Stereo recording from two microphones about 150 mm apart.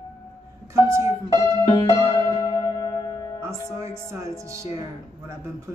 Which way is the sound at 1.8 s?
25° left (ahead or behind).